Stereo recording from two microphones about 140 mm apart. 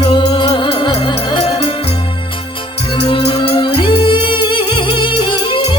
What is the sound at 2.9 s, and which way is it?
Music, 40° left (ahead or behind).